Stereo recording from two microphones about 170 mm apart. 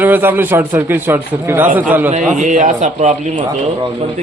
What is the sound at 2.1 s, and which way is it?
A man's voice, 45° right (ahead or behind).